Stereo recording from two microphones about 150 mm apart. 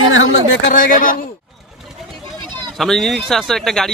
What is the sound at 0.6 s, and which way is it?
Speech, 65° left (ahead or behind).